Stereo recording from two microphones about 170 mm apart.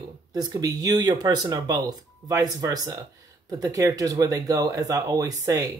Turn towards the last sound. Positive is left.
turn(degrees=-20)  # may be behind; listen again after turning